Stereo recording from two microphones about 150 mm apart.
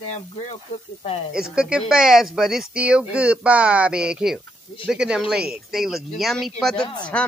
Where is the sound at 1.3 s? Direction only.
5° right (ahead or behind).